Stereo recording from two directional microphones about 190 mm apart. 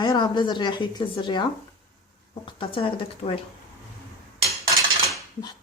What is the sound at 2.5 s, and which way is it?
Speech, 30° left (ahead or behind).